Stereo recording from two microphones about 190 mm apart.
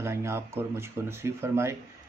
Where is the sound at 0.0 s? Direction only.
15° right (ahead or behind).